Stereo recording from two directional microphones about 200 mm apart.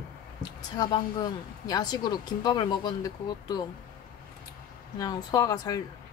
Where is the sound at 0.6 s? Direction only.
20° left (ahead or behind).